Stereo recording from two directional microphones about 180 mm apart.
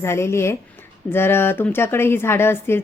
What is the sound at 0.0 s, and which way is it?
Speech, 15° left (ahead or behind).